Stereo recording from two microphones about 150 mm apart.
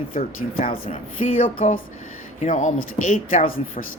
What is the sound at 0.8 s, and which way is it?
Speech, 65° left (ahead or behind).